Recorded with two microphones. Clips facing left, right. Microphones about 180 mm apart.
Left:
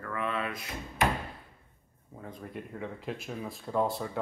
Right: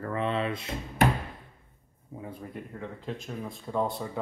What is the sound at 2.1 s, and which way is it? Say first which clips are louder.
Speech: right 2 dB; 10° right (ahead or behind).